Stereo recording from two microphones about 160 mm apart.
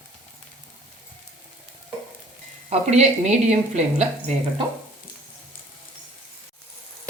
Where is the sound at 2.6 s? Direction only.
45° right (ahead or behind).